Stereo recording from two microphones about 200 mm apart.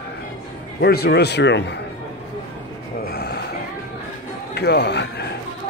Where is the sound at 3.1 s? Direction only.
55° left (ahead or behind).